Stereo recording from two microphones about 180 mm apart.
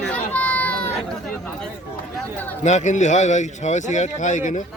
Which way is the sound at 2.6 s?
40° left (ahead or behind).